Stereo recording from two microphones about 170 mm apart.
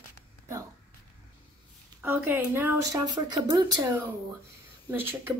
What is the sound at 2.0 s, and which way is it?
Speech, 10° right (ahead or behind).